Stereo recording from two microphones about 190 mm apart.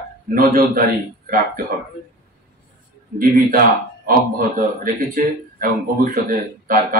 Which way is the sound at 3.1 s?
50° right (ahead or behind).